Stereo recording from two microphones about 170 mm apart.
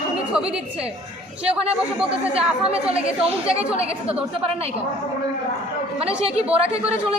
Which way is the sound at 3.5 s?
35° right (ahead or behind).